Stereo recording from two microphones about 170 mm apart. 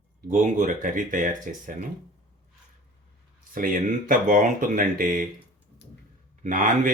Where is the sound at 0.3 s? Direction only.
45° right (ahead or behind).